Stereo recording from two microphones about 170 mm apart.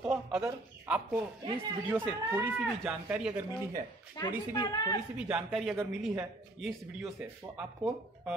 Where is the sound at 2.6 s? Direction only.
5° right (ahead or behind).